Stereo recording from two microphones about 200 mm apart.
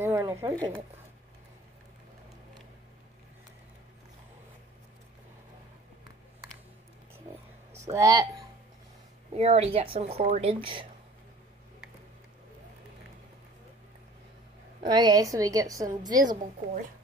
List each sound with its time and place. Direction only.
0.0 s a sound: 15° right (ahead or behind)
7.9 s a woman's voice: 20° right (ahead or behind)
9.3 s a woman's voice: 30° right (ahead or behind)
14.8 s a woman's voice: 20° right (ahead or behind)